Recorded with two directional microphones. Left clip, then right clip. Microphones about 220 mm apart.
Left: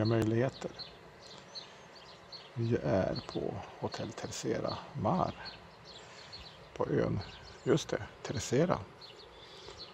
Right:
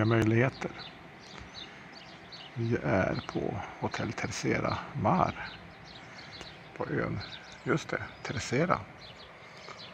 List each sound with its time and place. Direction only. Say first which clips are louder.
0.0 s speech: right 4 dB; 5° left (ahead or behind)
2.8 s speech: right 4 dB; 5° left (ahead or behind)
6.8 s speech: left 1 dB; 15° left (ahead or behind)